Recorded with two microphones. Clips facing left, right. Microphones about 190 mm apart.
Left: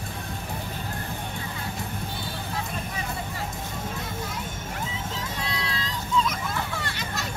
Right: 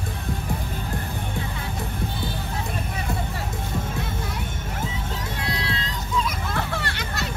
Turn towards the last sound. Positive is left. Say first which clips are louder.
# right 3 dB
turn(degrees=-65)  # may be behind; listen again after turning